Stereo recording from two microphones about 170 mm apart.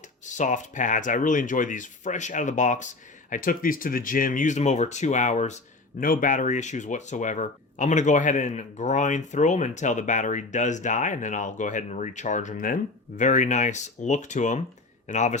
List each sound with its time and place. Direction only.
0.3 s speech: 45° left (ahead or behind)